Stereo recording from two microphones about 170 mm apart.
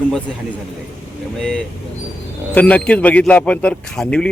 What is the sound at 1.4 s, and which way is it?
A man's voice, 5° left (ahead or behind).